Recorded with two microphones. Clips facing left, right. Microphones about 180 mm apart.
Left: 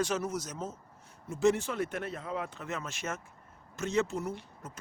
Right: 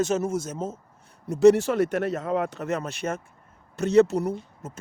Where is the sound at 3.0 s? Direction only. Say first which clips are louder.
Right 8 dB; 40° right (ahead or behind).